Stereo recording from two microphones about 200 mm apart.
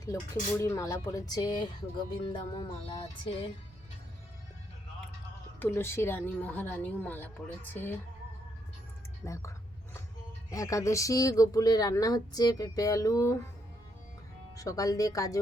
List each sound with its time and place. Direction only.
0.6 s speech: 15° left (ahead or behind)
2.3 s music: 25° left (ahead or behind)
5.5 s speech: 10° left (ahead or behind)
9.2 s a sound: 15° left (ahead or behind)
10.5 s speech: 15° left (ahead or behind)
14.5 s speech: 15° left (ahead or behind)